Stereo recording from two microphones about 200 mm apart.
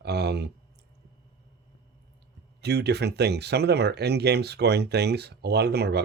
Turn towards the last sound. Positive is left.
turn(degrees=-55)  # may be behind; listen again after turning